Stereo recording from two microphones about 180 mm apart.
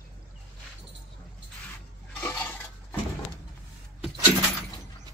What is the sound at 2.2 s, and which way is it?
Dishes, 10° left (ahead or behind).